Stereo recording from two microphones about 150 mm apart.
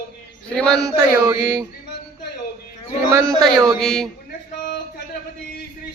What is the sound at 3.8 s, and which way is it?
Speech, 5° left (ahead or behind).